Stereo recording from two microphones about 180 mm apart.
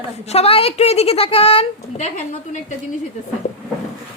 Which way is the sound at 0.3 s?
35° left (ahead or behind).